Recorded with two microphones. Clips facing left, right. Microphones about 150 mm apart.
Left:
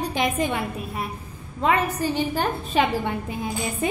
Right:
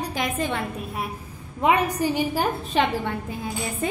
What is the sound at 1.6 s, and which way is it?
A woman's voice, 15° right (ahead or behind).